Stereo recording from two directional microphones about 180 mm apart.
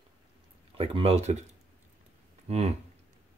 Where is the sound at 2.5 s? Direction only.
35° right (ahead or behind).